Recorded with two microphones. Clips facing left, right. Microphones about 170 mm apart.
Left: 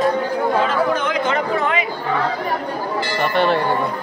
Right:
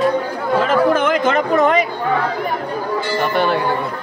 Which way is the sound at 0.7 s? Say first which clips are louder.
Right 5 dB; 50° right (ahead or behind).